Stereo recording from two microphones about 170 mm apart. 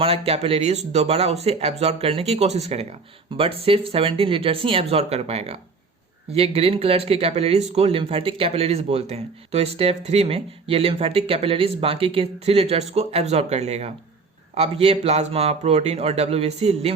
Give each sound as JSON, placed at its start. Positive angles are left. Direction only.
{"t": 0.0, "sound": "speech", "side_deg": -35}